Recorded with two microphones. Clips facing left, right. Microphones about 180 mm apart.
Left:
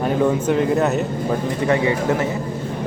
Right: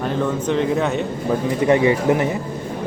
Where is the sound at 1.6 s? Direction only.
20° right (ahead or behind).